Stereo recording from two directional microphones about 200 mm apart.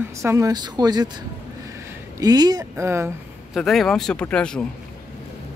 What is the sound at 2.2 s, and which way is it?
Speech, 20° right (ahead or behind).